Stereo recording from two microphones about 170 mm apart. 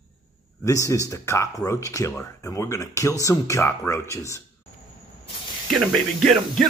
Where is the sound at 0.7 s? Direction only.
20° left (ahead or behind).